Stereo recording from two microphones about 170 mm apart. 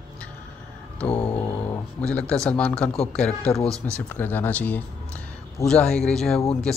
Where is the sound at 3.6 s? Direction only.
20° right (ahead or behind).